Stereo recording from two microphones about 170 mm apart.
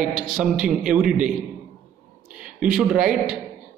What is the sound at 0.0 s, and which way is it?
Speech, 55° right (ahead or behind).